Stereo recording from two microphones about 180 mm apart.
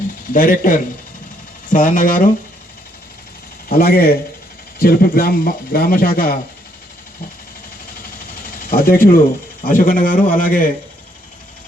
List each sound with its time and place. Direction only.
0.3 s speech: 50° left (ahead or behind)
3.7 s speech: 55° left (ahead or behind)
8.4 s speech: 55° left (ahead or behind)